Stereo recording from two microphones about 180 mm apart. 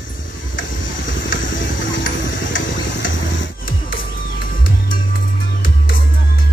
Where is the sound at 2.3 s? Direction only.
90° left.